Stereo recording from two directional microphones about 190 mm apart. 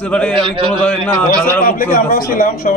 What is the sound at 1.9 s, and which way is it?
Speech, 45° left (ahead or behind).